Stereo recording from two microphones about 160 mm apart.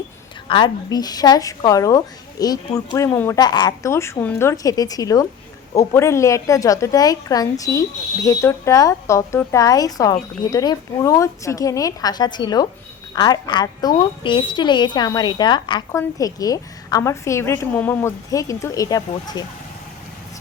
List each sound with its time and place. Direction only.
0.4 s a woman's voice: 30° left (ahead or behind)